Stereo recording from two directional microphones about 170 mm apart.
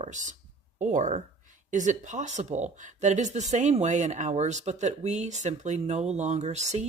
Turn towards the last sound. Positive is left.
turn(degrees=-40)  # may be behind; listen again after turning